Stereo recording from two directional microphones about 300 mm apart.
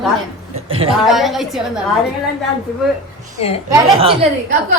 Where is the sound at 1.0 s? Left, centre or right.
Centre.